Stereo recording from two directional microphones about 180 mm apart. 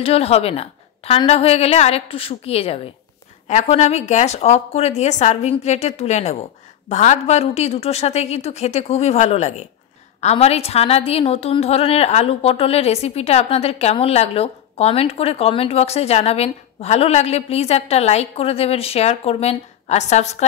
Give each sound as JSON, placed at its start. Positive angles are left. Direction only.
{"t": 0.0, "sound": "a woman's voice", "side_deg": 35}